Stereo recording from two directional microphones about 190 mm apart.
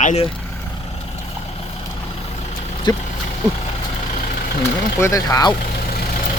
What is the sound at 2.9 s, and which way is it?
Speech, 20° left (ahead or behind).